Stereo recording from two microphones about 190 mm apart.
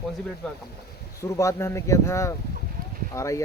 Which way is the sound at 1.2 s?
15° left (ahead or behind).